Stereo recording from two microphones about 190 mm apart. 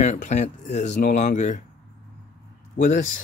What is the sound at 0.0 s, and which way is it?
Speech, 40° left (ahead or behind).